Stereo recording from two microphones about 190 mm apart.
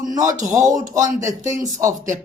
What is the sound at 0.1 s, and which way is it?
Speech, 20° right (ahead or behind).